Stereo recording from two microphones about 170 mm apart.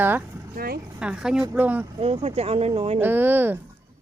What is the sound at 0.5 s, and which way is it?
Speech, 60° right (ahead or behind).